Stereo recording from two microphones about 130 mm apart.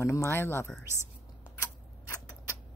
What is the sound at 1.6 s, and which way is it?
Scissors, 25° left (ahead or behind).